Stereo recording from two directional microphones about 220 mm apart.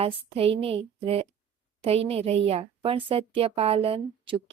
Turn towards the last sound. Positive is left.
turn(degrees=-25)  # may be behind; listen again after turning